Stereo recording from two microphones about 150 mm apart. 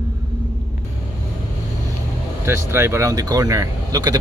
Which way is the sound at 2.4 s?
15° right (ahead or behind).